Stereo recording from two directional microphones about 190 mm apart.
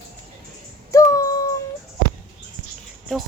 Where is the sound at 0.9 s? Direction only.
15° left (ahead or behind).